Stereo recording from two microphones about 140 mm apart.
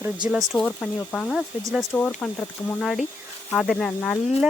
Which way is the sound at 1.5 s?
10° right (ahead or behind).